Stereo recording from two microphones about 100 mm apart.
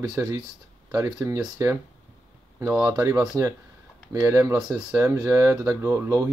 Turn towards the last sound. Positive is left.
turn(degrees=-30)  # may be behind; listen again after turning